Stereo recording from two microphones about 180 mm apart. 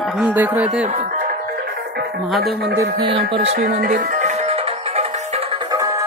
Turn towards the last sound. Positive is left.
turn(degrees=-20)  # may be behind; listen again after turning